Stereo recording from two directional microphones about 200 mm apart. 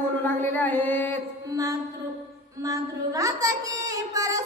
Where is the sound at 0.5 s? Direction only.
10° left (ahead or behind).